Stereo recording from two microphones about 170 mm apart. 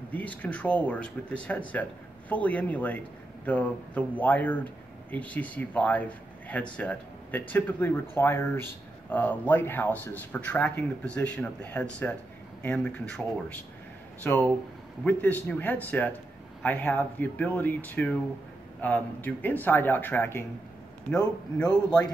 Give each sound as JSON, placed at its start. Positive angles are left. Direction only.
{"t": 0.1, "sound": "speech", "side_deg": 10}
{"t": 21.6, "sound": "a man's voice", "side_deg": 25}